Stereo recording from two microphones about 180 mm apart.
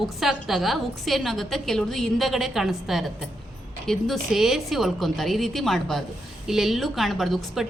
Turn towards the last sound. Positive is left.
turn(degrees=0)  # may be behind; listen again after turning